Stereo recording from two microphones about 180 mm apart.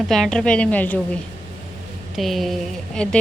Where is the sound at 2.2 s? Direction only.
Centre (ahead or behind).